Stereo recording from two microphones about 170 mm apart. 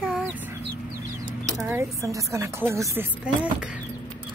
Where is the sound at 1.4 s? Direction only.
20° right (ahead or behind).